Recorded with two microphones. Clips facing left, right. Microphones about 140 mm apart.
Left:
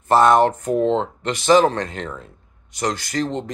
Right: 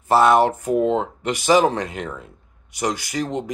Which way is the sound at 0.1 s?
5° right (ahead or behind).